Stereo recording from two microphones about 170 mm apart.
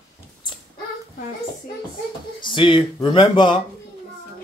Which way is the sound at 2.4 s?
30° left (ahead or behind).